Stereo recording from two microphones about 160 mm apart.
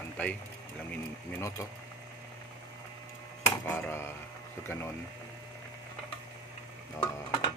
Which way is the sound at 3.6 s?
10° left (ahead or behind).